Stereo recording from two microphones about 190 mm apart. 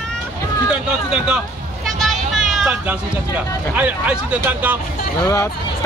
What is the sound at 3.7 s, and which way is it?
Speech, 10° right (ahead or behind).